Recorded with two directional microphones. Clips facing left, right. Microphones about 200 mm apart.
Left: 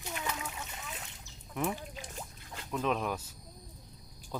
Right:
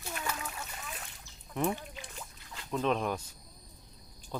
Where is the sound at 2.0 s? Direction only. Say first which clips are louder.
Left 3 dB; 40° left (ahead or behind).